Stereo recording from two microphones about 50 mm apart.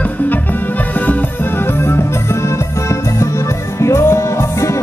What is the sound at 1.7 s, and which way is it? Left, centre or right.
Music, left.